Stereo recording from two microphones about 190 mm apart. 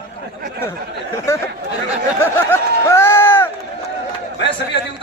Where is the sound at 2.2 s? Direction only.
10° left (ahead or behind).